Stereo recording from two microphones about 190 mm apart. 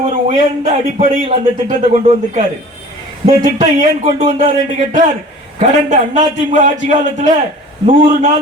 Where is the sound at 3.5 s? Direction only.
45° right (ahead or behind).